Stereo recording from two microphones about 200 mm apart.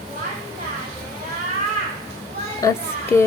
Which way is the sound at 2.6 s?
15° left (ahead or behind).